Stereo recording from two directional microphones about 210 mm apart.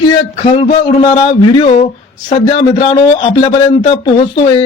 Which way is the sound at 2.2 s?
30° left (ahead or behind).